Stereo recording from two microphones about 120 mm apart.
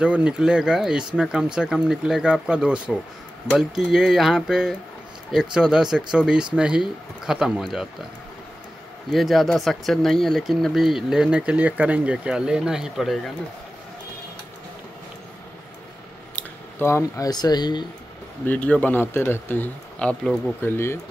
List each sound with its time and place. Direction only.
0.0 s speech: 10° right (ahead or behind)
9.1 s speech: centre (ahead or behind)
16.3 s speech: 20° left (ahead or behind); by 17.8 s 35° left (ahead or behind)
18.4 s speech: 15° left (ahead or behind)
20.6 s speech: 20° left (ahead or behind)